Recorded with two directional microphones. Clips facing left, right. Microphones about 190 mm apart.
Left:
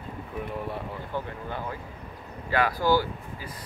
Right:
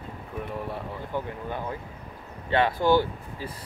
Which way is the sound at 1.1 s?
15° right (ahead or behind).